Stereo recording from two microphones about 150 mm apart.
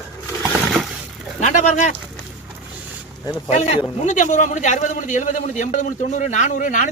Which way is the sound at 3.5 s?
45° left (ahead or behind).